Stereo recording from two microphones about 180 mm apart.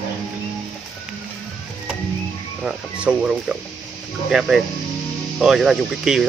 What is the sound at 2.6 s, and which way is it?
Speech, 5° right (ahead or behind).